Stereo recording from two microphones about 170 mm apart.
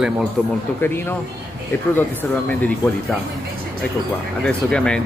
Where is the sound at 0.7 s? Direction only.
15° left (ahead or behind).